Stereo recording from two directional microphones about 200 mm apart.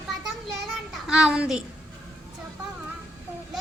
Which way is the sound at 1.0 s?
5° right (ahead or behind).